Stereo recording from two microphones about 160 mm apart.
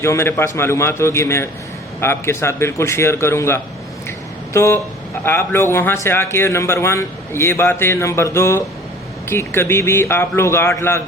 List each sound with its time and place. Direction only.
0.0 s a man's voice: 15° left (ahead or behind)